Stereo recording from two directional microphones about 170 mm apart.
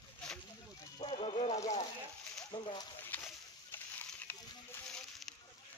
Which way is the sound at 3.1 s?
10° left (ahead or behind).